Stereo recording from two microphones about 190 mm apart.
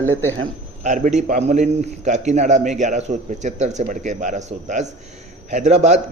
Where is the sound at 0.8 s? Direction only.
40° right (ahead or behind).